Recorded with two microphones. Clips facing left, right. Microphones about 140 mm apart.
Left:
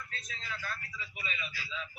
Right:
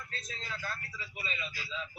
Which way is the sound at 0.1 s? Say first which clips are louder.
Right 1 dB; 35° right (ahead or behind).